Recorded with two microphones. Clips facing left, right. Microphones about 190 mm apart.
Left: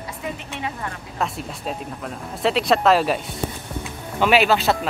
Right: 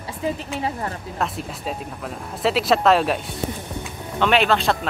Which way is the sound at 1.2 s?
Centre (ahead or behind).